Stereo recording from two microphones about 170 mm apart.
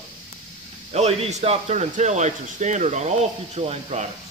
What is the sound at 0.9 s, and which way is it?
Speech, 40° right (ahead or behind).